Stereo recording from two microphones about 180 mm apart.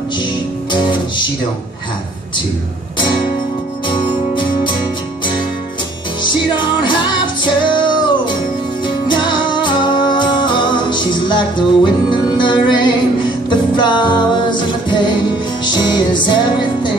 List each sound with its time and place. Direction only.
0.2 s music: 25° left (ahead or behind)
3.8 s music: 25° left (ahead or behind)
6.2 s music: 25° left (ahead or behind)